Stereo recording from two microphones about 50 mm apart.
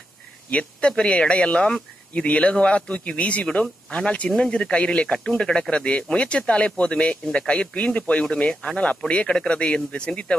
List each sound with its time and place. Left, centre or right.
0.5 s speech: left